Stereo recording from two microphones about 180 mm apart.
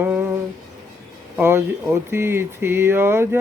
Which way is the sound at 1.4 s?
15° right (ahead or behind).